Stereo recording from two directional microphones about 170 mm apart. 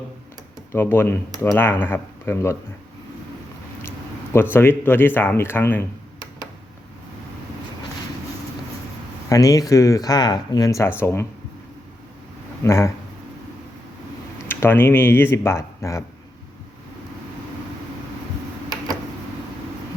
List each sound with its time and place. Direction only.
0.7 s speech: 15° left (ahead or behind)
3.8 s speech: 15° left (ahead or behind)
9.3 s speech: 20° left (ahead or behind)
12.6 s speech: 15° left (ahead or behind)
14.4 s speech: 15° left (ahead or behind)